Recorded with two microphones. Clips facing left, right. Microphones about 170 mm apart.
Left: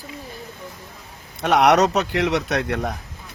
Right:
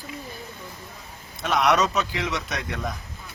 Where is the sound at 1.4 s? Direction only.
70° left (ahead or behind).